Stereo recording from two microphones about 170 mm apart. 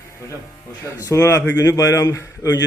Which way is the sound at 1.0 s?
15° left (ahead or behind).